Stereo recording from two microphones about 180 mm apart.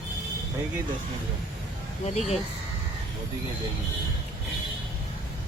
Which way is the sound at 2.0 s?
35° left (ahead or behind).